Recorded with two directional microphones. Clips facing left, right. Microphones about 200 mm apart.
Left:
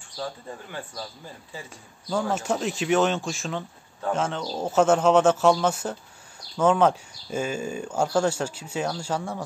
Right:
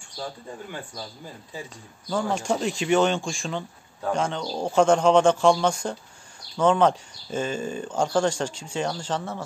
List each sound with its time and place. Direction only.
2.0 s speech: 5° left (ahead or behind)